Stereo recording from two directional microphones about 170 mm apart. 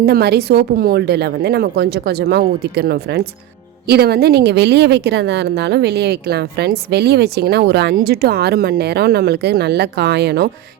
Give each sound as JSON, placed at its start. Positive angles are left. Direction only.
{"t": 0.0, "sound": "a woman's voice", "side_deg": -75}
{"t": 7.9, "sound": "a woman's voice", "side_deg": -65}